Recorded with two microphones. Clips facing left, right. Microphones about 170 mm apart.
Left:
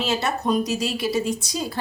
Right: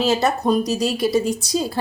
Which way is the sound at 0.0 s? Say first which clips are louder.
Right 5 dB; 40° right (ahead or behind).